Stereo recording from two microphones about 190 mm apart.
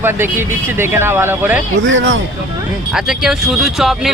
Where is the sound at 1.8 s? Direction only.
80° right.